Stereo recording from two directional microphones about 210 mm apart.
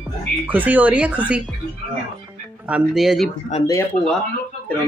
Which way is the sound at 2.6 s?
5° right (ahead or behind).